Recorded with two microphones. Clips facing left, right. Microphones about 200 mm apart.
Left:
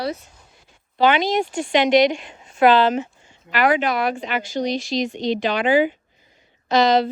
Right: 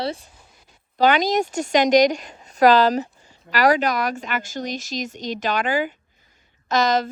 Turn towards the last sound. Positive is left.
turn(degrees=-45)  # may be behind; listen again after turning